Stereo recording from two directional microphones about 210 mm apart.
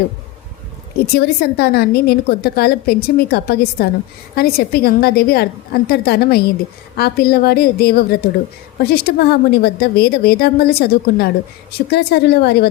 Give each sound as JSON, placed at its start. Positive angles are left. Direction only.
{"t": 1.0, "sound": "a woman's voice", "side_deg": 50}